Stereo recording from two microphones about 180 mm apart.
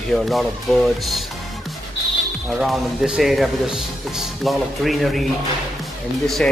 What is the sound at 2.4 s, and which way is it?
Speech, centre (ahead or behind).